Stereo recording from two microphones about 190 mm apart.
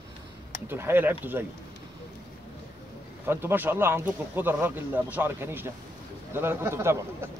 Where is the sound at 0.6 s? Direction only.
10° right (ahead or behind).